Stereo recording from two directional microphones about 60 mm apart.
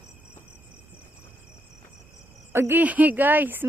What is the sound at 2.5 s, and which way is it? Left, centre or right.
Speech, right.